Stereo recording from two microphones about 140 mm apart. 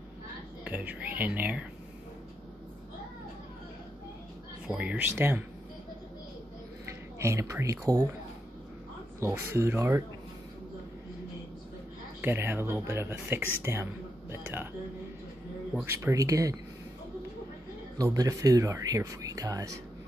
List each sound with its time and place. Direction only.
0.7 s speech: 10° right (ahead or behind)
4.6 s speech: 10° right (ahead or behind)
6.9 s speech: 20° right (ahead or behind)
9.2 s speech: 20° right (ahead or behind)
12.2 s speech: 15° right (ahead or behind)
15.7 s speech: 15° right (ahead or behind)
17.9 s speech: 25° right (ahead or behind)